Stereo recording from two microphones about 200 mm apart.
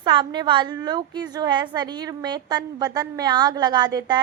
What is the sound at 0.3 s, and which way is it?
A woman's voice, 25° right (ahead or behind).